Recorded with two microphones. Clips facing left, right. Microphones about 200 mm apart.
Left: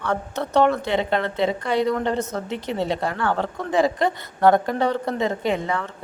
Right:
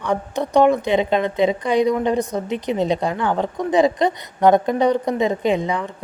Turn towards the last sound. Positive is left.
turn(degrees=-15)  # may be behind; listen again after turning